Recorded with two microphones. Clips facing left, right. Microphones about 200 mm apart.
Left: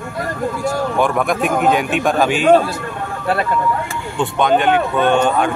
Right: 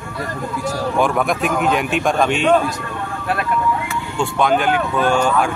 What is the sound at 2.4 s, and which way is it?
Speech, 35° left (ahead or behind).